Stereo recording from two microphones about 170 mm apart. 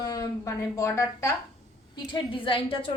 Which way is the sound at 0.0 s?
20° left (ahead or behind).